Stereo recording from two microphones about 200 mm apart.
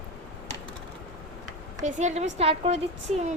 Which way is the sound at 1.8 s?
35° right (ahead or behind).